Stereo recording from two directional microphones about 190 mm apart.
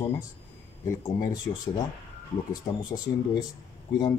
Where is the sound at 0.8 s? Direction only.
15° left (ahead or behind).